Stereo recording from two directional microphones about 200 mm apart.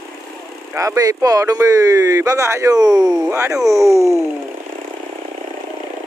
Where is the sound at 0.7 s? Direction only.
15° right (ahead or behind).